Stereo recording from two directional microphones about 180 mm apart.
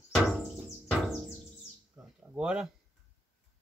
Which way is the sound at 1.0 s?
Centre (ahead or behind).